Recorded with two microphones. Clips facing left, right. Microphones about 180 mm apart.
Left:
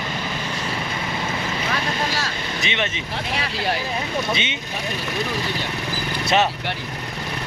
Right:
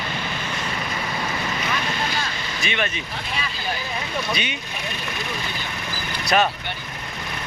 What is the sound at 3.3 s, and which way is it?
Speech, 80° left.